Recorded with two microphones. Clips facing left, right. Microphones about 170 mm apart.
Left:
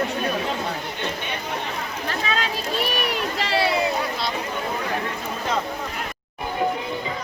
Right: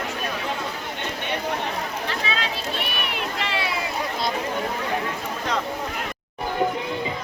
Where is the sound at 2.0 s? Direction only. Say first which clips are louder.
Left 5 dB; 45° left (ahead or behind).